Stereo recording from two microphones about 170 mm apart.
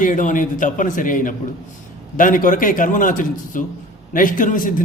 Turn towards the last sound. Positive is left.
turn(degrees=50)  # may be behind; listen again after turning